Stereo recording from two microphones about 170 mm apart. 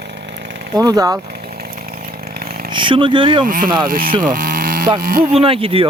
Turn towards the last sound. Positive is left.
turn(degrees=-35)  # may be behind; listen again after turning